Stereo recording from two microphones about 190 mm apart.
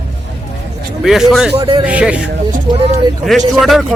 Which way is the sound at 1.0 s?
Centre (ahead or behind).